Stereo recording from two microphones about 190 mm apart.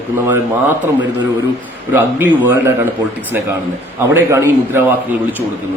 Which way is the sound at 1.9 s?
10° right (ahead or behind).